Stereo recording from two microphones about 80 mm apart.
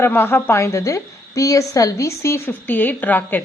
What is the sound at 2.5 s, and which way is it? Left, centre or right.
Speech, left.